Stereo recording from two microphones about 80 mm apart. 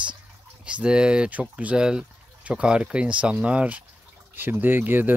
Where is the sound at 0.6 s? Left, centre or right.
Centre.